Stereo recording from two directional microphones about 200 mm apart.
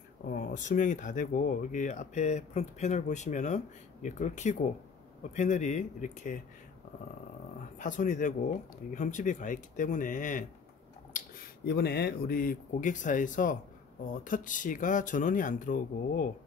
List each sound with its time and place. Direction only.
0.3 s speech: 40° left (ahead or behind)
7.8 s speech: 40° left (ahead or behind)
11.1 s speech: 50° left (ahead or behind)